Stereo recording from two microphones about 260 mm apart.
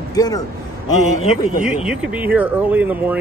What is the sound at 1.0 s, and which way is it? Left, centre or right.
Speech, left.